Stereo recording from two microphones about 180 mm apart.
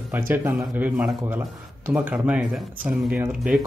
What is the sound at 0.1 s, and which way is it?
Speech, 10° right (ahead or behind).